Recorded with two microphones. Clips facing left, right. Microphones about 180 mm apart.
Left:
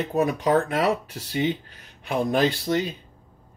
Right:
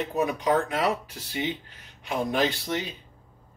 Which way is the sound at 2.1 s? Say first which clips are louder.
Left 4 dB; 50° left (ahead or behind).